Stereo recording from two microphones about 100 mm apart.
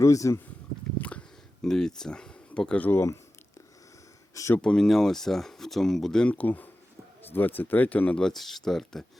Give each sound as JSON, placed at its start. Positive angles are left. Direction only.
{"t": 0.0, "sound": "speech", "side_deg": 30}
{"t": 0.9, "sound": "a sound", "side_deg": 15}
{"t": 1.6, "sound": "speech", "side_deg": 5}
{"t": 4.5, "sound": "speech", "side_deg": 5}